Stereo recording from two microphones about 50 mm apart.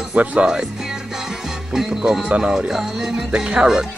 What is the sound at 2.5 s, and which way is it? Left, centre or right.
Speech, centre.